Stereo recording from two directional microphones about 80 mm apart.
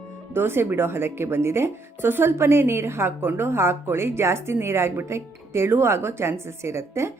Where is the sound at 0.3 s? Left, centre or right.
Right.